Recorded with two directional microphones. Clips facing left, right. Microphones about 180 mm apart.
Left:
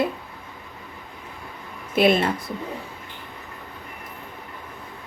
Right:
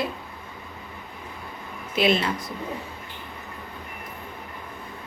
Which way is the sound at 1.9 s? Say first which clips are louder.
Left 4 dB; 50° left (ahead or behind).